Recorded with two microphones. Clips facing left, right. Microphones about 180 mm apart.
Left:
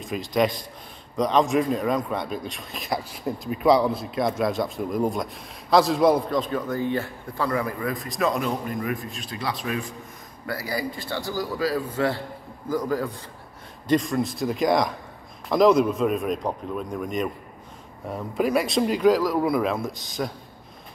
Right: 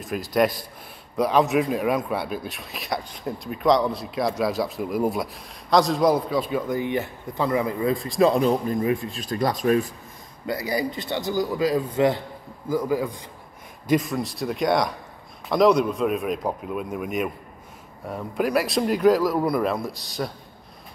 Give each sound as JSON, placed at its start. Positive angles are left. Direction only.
{"t": 0.0, "sound": "a man's voice", "side_deg": -5}
{"t": 9.2, "sound": "speech", "side_deg": -45}
{"t": 10.4, "sound": "a man's voice", "side_deg": -20}